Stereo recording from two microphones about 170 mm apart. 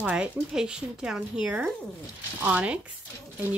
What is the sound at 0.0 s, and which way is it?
Speech, 5° right (ahead or behind).